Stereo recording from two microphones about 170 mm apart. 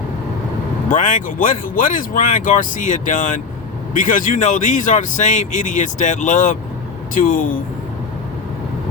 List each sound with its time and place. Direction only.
0.9 s speech: 50° left (ahead or behind)